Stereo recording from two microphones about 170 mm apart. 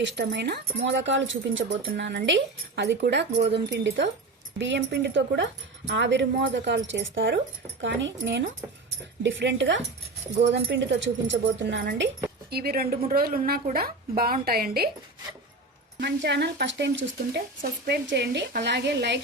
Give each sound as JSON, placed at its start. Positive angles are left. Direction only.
{"t": 0.0, "sound": "speech", "side_deg": -90}
{"t": 12.5, "sound": "a woman's voice", "side_deg": -65}
{"t": 16.0, "sound": "speech", "side_deg": -85}
{"t": 17.6, "sound": "speech", "side_deg": -75}